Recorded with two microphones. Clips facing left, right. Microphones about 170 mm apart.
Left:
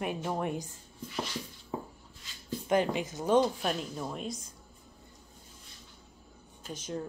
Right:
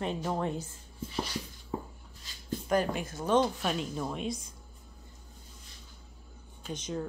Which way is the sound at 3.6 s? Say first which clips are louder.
Right 1 dB; centre (ahead or behind).